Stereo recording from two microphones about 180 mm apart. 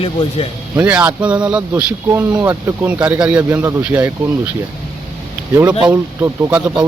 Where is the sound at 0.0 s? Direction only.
30° left (ahead or behind).